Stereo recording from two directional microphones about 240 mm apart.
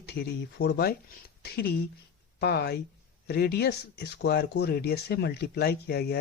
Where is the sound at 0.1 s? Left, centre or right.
Left.